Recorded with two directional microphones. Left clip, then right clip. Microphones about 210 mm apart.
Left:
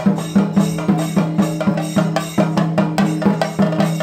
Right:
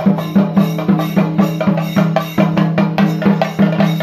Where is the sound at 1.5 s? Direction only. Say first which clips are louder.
Right 2 dB; 25° left (ahead or behind).